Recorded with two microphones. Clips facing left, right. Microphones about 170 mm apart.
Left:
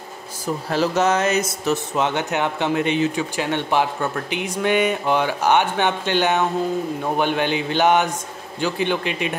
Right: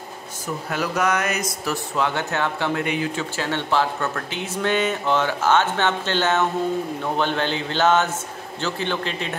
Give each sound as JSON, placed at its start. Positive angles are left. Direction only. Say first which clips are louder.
{"t": 0.7, "sound": "speech", "louder": "left 4 dB", "side_deg": 30}